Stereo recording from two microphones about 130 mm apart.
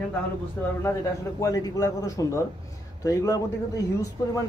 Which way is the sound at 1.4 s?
25° left (ahead or behind).